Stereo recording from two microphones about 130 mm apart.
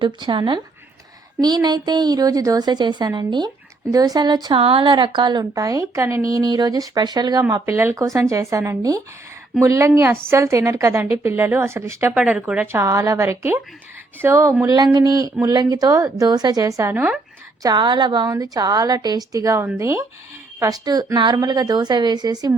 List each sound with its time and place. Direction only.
0.0 s speech: 40° right (ahead or behind)
7.6 s a woman's voice: 15° right (ahead or behind)
12.7 s a woman's voice: 25° right (ahead or behind)